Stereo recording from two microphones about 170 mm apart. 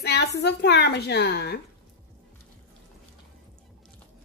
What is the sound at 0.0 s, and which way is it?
Speech, 80° left.